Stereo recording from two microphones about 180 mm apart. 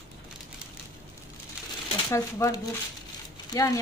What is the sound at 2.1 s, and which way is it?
A woman's voice, 15° left (ahead or behind).